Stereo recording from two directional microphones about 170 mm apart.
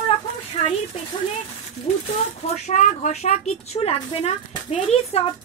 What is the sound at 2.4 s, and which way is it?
A woman's voice, 40° left (ahead or behind).